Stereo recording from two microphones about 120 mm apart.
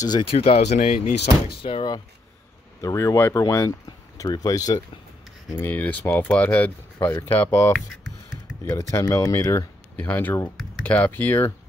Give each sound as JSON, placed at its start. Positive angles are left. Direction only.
{"t": 0.3, "sound": "speech", "side_deg": 55}
{"t": 0.7, "sound": "speech", "side_deg": 80}
{"t": 1.6, "sound": "speech", "side_deg": 45}
{"t": 2.8, "sound": "speech", "side_deg": 25}
{"t": 5.5, "sound": "speech", "side_deg": 15}
{"t": 7.7, "sound": "speech", "side_deg": 5}
{"t": 8.7, "sound": "speech", "side_deg": 25}
{"t": 9.9, "sound": "speech", "side_deg": 15}